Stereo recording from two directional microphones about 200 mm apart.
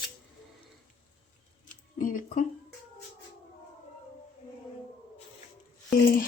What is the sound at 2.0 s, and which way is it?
Speech, 40° left (ahead or behind).